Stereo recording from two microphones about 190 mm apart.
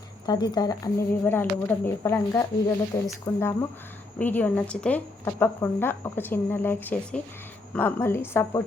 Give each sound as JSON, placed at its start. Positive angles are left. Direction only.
{"t": 0.3, "sound": "speech", "side_deg": 20}